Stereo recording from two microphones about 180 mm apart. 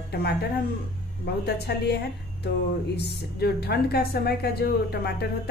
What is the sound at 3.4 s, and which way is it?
A woman's voice, 60° left (ahead or behind).